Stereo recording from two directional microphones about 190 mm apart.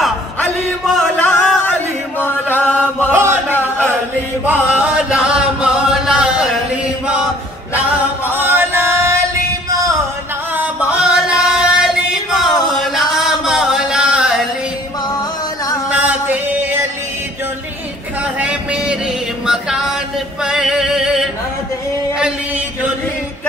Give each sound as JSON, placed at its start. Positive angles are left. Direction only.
{"t": 0.9, "sound": "chant", "side_deg": 5}
{"t": 3.1, "sound": "chant", "side_deg": -15}
{"t": 8.3, "sound": "chant", "side_deg": -10}
{"t": 9.7, "sound": "a sound", "side_deg": -20}
{"t": 10.5, "sound": "music", "side_deg": -10}
{"t": 12.4, "sound": "a sound", "side_deg": 0}
{"t": 15.9, "sound": "music", "side_deg": -10}
{"t": 18.2, "sound": "a sound", "side_deg": -5}
{"t": 20.4, "sound": "male singing", "side_deg": -5}